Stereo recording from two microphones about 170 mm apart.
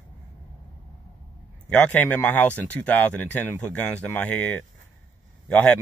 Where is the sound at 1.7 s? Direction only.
5° left (ahead or behind).